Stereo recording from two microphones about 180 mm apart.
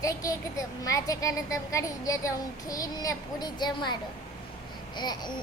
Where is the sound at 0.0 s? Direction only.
20° left (ahead or behind).